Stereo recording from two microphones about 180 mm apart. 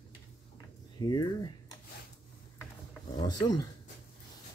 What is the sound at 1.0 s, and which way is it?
Speech, 25° left (ahead or behind).